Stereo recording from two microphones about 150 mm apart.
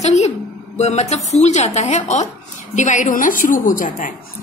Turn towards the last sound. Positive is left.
turn(degrees=65)  # may be behind; listen again after turning